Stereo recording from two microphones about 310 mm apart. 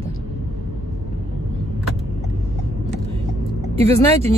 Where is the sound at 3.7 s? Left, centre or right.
Centre.